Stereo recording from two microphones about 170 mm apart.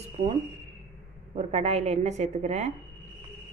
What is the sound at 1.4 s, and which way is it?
Speech, 40° right (ahead or behind).